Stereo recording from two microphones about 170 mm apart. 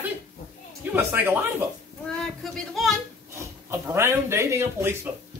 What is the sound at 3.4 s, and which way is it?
Speech, 15° right (ahead or behind).